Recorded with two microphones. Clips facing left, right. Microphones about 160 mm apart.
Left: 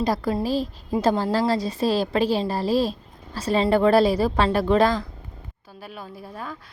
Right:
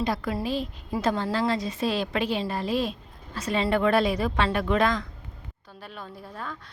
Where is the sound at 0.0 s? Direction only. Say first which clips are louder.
Left 4 dB; 35° left (ahead or behind).